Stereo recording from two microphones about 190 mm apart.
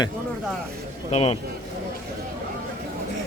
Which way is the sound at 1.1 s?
30° left (ahead or behind).